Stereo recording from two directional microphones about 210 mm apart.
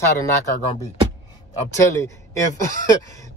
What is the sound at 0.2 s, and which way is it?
Speech, 15° left (ahead or behind).